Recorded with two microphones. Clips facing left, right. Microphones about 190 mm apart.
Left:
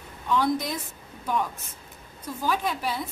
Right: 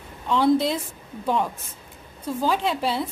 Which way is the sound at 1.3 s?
25° right (ahead or behind).